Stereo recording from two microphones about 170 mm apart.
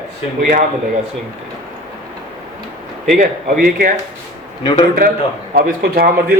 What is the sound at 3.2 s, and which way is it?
Speech, 55° right (ahead or behind).